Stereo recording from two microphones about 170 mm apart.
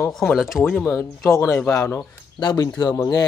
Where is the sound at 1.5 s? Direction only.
15° left (ahead or behind).